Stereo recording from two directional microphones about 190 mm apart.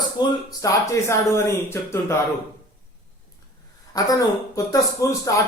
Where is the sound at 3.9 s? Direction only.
20° left (ahead or behind).